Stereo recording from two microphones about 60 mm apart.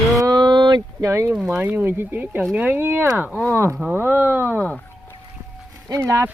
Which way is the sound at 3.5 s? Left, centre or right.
Right.